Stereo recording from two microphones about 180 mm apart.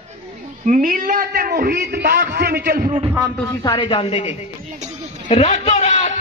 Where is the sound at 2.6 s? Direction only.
50° right (ahead or behind).